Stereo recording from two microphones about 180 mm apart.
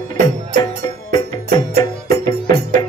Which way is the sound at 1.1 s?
25° left (ahead or behind).